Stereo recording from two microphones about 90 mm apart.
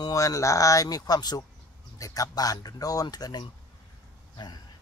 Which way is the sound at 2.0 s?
35° left (ahead or behind).